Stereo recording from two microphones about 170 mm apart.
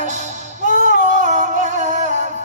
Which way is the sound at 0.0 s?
45° right (ahead or behind).